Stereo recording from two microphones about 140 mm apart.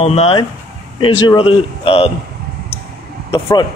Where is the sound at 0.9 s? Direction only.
35° left (ahead or behind).